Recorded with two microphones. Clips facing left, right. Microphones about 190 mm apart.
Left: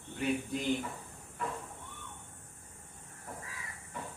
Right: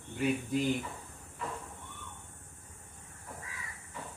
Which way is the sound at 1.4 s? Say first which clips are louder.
Left 2 dB; 50° left (ahead or behind).